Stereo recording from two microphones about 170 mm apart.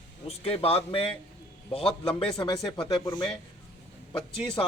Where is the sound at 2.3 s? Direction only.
30° left (ahead or behind).